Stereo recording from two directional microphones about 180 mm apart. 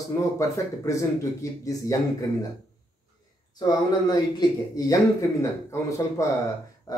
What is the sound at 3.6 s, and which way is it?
Speech, 20° left (ahead or behind).